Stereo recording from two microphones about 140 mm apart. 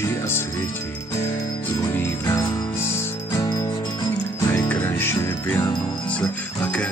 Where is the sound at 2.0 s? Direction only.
20° left (ahead or behind).